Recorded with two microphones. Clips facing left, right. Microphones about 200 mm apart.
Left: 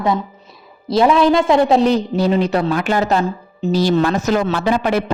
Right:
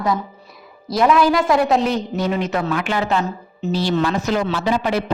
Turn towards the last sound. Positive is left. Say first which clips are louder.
# left 3 dB
turn(degrees=55)  # may be behind; listen again after turning